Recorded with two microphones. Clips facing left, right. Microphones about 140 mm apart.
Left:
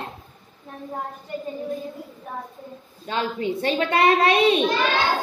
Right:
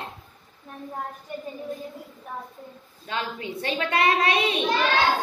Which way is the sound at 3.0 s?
30° left (ahead or behind).